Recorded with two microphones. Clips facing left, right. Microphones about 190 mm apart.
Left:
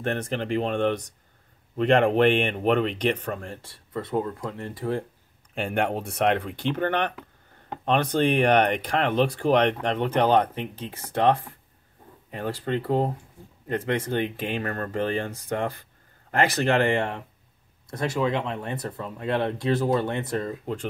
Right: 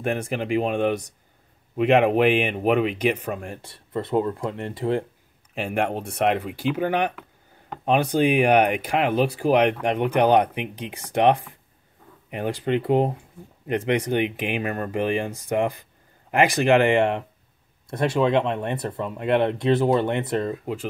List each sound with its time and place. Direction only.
0.0 s speech: 10° right (ahead or behind)
3.6 s speech: 25° right (ahead or behind)
5.5 s speech: 5° right (ahead or behind); by 17.2 s 20° right (ahead or behind)
18.5 s speech: 65° right (ahead or behind)
18.8 s speech: 20° right (ahead or behind)